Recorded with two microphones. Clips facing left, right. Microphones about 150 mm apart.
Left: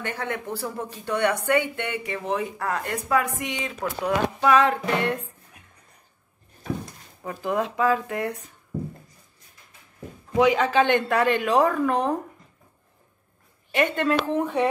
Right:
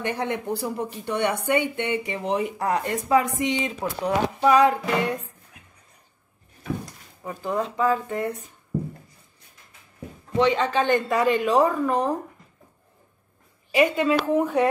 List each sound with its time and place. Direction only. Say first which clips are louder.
0.0 s a woman's voice: right 3 dB; 20° right (ahead or behind)
4.6 s a woman's voice: right 2 dB; 10° right (ahead or behind)
7.2 s a man's voice: left 1 dB; centre (ahead or behind)
10.3 s a man's voice: left 2 dB; 10° left (ahead or behind)
13.7 s a man's voice: right 2 dB; 5° right (ahead or behind)